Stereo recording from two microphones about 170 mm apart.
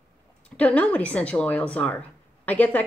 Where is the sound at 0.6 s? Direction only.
10° left (ahead or behind).